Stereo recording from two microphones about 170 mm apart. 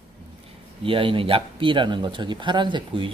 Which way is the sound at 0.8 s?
30° right (ahead or behind).